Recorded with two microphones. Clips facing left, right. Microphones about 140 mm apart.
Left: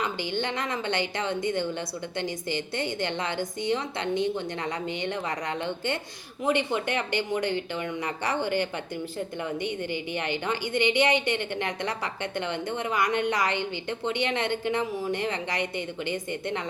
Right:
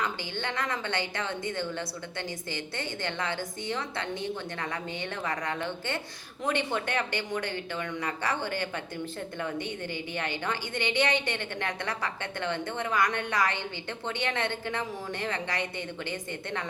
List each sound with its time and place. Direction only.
0.0 s a woman's voice: 20° left (ahead or behind)